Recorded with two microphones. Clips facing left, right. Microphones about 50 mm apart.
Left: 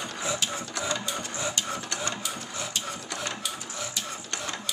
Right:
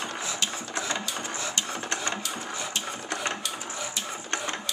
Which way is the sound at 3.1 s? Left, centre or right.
Right.